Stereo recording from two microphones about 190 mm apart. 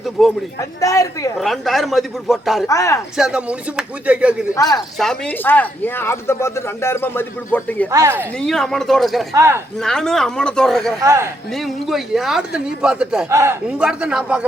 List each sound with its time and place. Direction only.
0.2 s a man's voice: centre (ahead or behind)
0.8 s speech: 15° left (ahead or behind)
1.4 s a man's voice: centre (ahead or behind)
2.6 s speech: 15° left (ahead or behind)
3.2 s a man's voice: 5° right (ahead or behind)
4.5 s speech: 20° left (ahead or behind)
4.9 s speech: 5° left (ahead or behind)
7.9 s speech: 15° right (ahead or behind)
8.4 s a man's voice: centre (ahead or behind)
9.3 s speech: 15° right (ahead or behind)
9.8 s a man's voice: 5° left (ahead or behind)
11.0 s speech: 15° right (ahead or behind)
11.5 s a man's voice: centre (ahead or behind)